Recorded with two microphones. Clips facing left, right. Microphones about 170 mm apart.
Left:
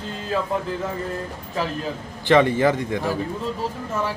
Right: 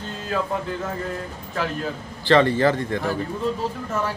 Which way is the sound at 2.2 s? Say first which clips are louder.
Even; 15° left (ahead or behind).